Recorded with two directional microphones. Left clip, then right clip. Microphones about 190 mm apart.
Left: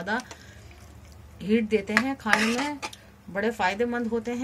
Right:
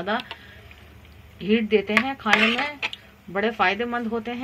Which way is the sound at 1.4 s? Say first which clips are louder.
Right 4 dB; 30° right (ahead or behind).